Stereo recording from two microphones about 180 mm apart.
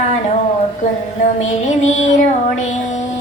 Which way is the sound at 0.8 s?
40° left (ahead or behind).